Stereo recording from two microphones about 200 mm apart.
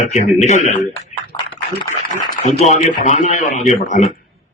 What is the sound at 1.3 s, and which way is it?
Speech, 25° left (ahead or behind).